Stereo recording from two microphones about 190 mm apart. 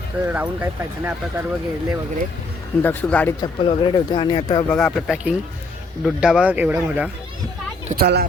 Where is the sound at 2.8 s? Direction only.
10° left (ahead or behind).